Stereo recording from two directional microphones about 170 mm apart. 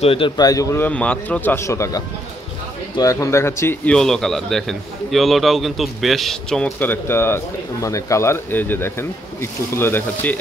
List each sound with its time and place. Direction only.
0.0 s speech: 30° left (ahead or behind); by 10.3 s 15° left (ahead or behind)